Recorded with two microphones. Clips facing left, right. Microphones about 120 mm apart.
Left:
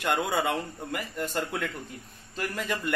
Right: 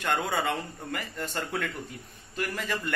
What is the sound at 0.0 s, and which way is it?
A man's voice, 5° left (ahead or behind).